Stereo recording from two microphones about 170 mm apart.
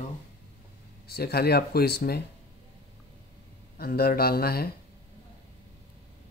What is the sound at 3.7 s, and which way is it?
Speech, 65° left (ahead or behind).